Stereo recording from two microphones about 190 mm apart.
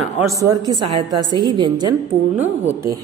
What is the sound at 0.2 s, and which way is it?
A woman's voice, 15° right (ahead or behind).